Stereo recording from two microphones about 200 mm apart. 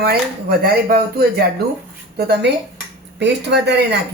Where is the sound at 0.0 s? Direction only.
50° right (ahead or behind).